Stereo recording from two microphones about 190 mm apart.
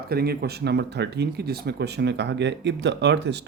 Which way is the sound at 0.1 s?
55° right (ahead or behind).